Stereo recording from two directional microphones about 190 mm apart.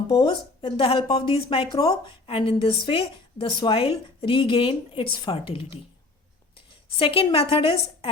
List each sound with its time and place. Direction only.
0.1 s speech: 25° left (ahead or behind)
6.9 s speech: 30° left (ahead or behind)